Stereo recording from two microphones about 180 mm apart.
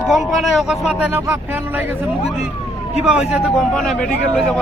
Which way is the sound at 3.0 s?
5° right (ahead or behind).